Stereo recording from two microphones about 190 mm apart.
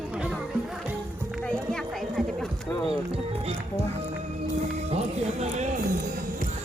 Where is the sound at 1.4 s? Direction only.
5° left (ahead or behind).